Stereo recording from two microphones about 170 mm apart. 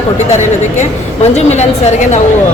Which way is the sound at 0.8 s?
40° left (ahead or behind).